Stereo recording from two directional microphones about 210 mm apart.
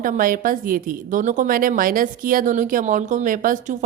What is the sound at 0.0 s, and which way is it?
A woman's voice, 40° right (ahead or behind).